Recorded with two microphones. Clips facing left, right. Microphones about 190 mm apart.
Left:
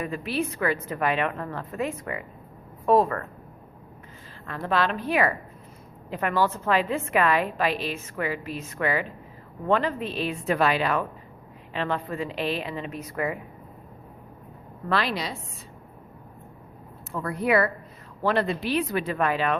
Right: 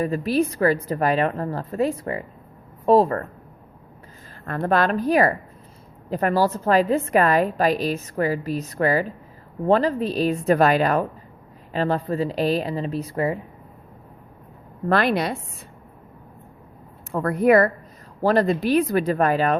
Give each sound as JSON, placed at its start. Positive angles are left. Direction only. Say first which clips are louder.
{"t": 0.0, "sound": "a woman's voice", "louder": "right 7 dB", "side_deg": -35}
{"t": 4.4, "sound": "a woman's voice", "louder": "right 5 dB", "side_deg": -45}
{"t": 14.8, "sound": "speech", "louder": "right 7 dB", "side_deg": -50}
{"t": 17.1, "sound": "speech", "louder": "right 7 dB", "side_deg": -50}